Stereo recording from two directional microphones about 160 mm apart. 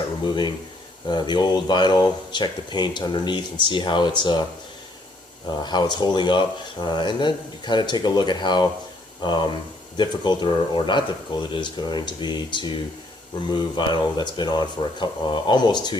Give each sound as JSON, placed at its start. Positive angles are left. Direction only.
{"t": 1.0, "sound": "speech", "side_deg": 30}
{"t": 5.5, "sound": "speech", "side_deg": 25}